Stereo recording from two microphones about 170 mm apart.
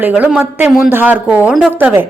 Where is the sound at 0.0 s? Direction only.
10° right (ahead or behind).